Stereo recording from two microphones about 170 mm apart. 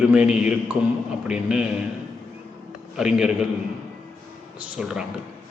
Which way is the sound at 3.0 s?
5° right (ahead or behind).